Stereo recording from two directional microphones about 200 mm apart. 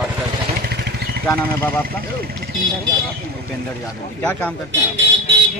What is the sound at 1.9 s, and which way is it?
Speech, 50° right (ahead or behind).